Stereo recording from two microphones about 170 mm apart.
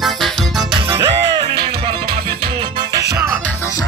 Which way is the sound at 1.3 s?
25° right (ahead or behind).